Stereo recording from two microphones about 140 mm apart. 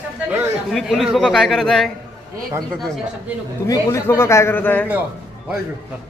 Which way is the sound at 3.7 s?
25° left (ahead or behind).